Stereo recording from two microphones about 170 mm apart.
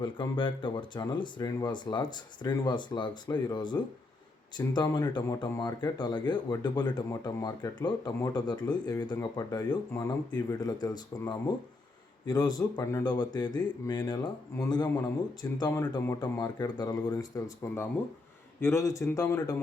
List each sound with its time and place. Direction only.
0.0 s speech: 30° left (ahead or behind)